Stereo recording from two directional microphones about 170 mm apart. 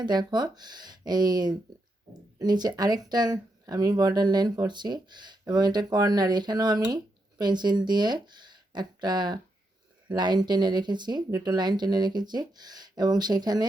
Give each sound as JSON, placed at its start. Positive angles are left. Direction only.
{"t": 0.0, "sound": "speech", "side_deg": -25}